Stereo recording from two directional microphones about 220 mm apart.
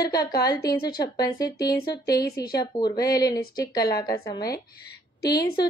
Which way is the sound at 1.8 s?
15° left (ahead or behind).